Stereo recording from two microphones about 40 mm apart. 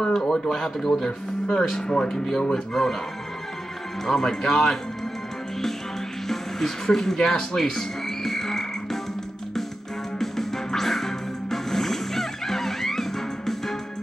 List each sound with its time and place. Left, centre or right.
0.0 s speech: centre
4.0 s speech: centre
6.2 s music: centre
10.1 s music: centre